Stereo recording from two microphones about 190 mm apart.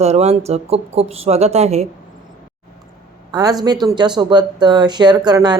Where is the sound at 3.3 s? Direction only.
20° right (ahead or behind).